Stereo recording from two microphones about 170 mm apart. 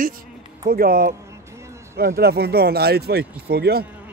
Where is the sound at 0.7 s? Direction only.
55° right (ahead or behind).